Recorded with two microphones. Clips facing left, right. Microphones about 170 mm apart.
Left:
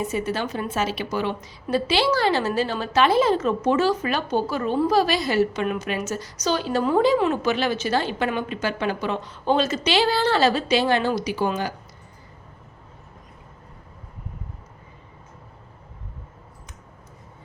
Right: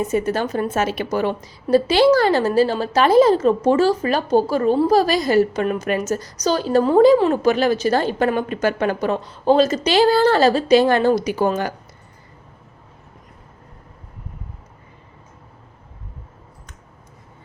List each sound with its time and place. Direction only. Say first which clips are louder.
0.0 s a woman's voice: right 5 dB; 45° right (ahead or behind)